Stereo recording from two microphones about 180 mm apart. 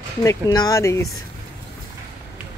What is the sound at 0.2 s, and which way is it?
Speech, 20° left (ahead or behind).